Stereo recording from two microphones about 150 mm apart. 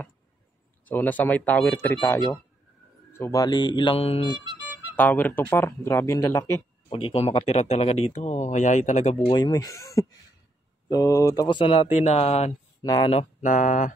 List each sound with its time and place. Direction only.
0.8 s a man's voice: 10° left (ahead or behind)
3.4 s mantra: 30° left (ahead or behind)
4.6 s music: 10° right (ahead or behind)
4.9 s speech: 10° left (ahead or behind)
6.9 s speech: 40° left (ahead or behind)
9.3 s speech: 25° left (ahead or behind); by 12.5 s 45° left (ahead or behind)
13.4 s speech: 60° left (ahead or behind)